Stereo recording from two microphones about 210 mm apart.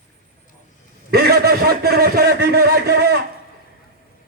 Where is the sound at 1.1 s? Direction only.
50° right (ahead or behind).